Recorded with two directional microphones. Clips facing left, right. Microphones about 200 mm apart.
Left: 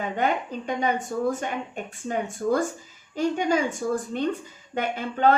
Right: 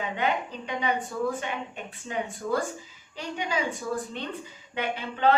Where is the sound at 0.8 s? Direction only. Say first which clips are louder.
Left 2 dB; 45° left (ahead or behind).